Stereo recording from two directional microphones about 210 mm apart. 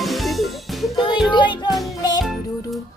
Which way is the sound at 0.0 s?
Centre (ahead or behind).